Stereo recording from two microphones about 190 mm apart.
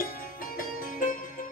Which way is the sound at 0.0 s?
50° left (ahead or behind).